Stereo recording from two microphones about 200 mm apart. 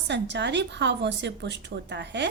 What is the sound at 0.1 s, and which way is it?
Speech, 60° right (ahead or behind).